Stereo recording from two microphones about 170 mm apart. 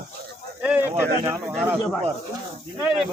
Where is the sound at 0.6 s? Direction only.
10° right (ahead or behind).